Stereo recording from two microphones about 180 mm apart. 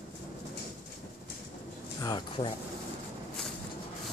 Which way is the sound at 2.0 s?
25° left (ahead or behind).